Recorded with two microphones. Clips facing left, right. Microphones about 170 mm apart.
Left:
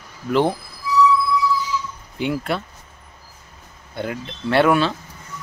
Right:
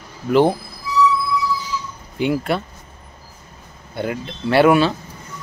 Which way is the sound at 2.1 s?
Centre (ahead or behind).